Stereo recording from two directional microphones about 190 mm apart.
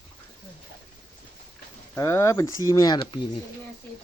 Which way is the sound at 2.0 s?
15° left (ahead or behind).